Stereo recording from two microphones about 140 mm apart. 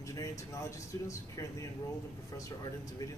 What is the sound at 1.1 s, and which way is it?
Speech, 20° left (ahead or behind).